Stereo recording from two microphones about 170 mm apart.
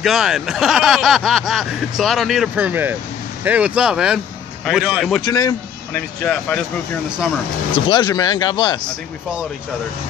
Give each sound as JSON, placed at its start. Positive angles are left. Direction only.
{"t": 0.0, "sound": "speech", "side_deg": 0}
{"t": 5.2, "sound": "a man's voice", "side_deg": 20}
{"t": 6.2, "sound": "speech", "side_deg": 5}
{"t": 7.7, "sound": "speech", "side_deg": 25}